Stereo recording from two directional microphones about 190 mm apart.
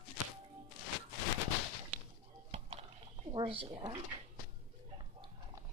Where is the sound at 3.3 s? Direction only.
30° right (ahead or behind).